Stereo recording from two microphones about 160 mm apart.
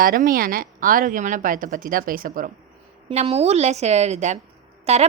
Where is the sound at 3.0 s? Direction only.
40° right (ahead or behind).